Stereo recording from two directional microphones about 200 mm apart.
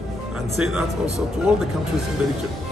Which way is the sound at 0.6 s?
5° right (ahead or behind).